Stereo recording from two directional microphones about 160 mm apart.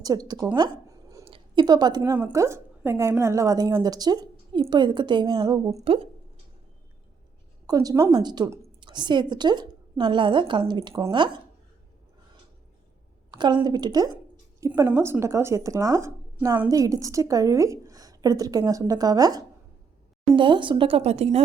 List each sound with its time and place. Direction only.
0.0 s speech: 25° right (ahead or behind)
0.5 s a sound: 25° right (ahead or behind)
2.1 s a woman's voice: 15° right (ahead or behind)
5.8 s speech: 35° right (ahead or behind)
7.7 s a woman's voice: 25° right (ahead or behind)
13.3 s a woman's voice: 30° right (ahead or behind)